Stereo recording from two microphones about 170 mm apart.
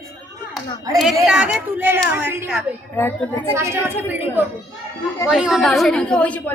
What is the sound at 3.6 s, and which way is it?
A woman's voice, 15° right (ahead or behind).